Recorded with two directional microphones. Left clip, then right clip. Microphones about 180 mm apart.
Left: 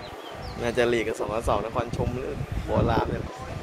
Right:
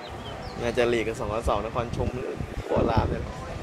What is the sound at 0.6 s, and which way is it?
Speech, 20° left (ahead or behind).